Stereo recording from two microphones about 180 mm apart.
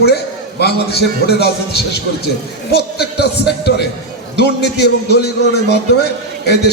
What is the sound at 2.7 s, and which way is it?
A man's voice, 65° left (ahead or behind).